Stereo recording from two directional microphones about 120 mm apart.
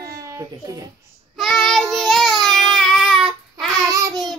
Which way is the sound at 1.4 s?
Centre (ahead or behind).